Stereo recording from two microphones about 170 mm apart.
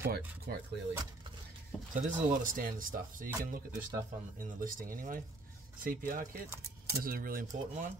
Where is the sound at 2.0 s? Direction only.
45° right (ahead or behind).